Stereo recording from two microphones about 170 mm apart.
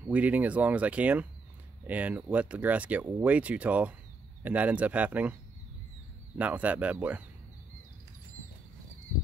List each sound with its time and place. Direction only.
0.0 s speech: 10° right (ahead or behind)
6.3 s speech: 10° right (ahead or behind)